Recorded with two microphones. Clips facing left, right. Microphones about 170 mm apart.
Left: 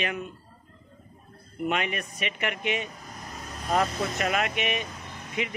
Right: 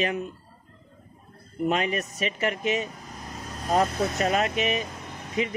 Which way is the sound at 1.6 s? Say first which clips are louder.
Right 3 dB; 35° right (ahead or behind).